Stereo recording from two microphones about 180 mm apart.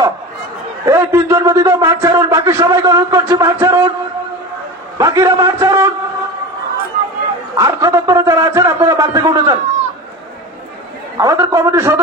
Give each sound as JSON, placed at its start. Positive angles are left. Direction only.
{"t": 0.8, "sound": "a man's voice", "side_deg": -15}
{"t": 4.9, "sound": "a man's voice", "side_deg": -15}
{"t": 7.5, "sound": "a man's voice", "side_deg": -15}
{"t": 11.1, "sound": "a man's voice", "side_deg": -20}